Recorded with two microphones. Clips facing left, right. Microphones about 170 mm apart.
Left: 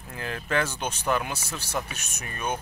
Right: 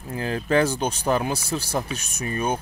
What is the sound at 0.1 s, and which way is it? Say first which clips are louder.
Speech: right 7 dB; 35° right (ahead or behind).